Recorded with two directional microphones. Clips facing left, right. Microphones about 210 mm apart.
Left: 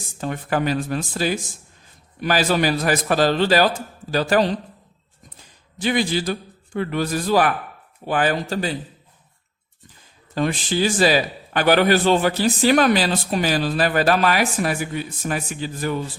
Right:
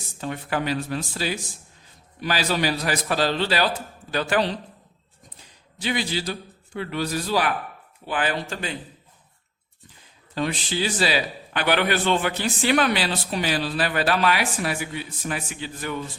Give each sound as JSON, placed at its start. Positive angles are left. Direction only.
{"t": 0.2, "sound": "a man's voice", "side_deg": 45}
{"t": 5.8, "sound": "a man's voice", "side_deg": 50}
{"t": 10.3, "sound": "a man's voice", "side_deg": 45}